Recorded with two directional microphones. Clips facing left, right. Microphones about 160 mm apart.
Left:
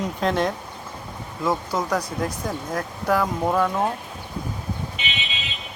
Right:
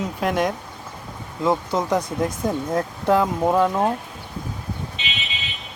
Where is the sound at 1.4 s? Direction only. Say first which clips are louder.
Right 3 dB; 25° right (ahead or behind).